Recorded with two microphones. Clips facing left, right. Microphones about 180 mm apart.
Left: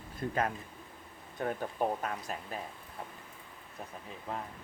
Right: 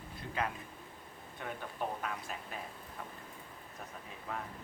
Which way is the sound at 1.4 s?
40° left (ahead or behind).